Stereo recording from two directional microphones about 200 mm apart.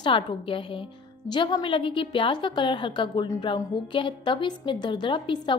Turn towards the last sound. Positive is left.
turn(degrees=25)  # may be behind; listen again after turning